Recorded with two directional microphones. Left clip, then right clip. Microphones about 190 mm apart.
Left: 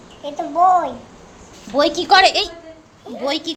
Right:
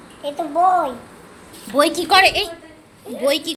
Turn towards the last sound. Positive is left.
turn(degrees=10)  # may be behind; listen again after turning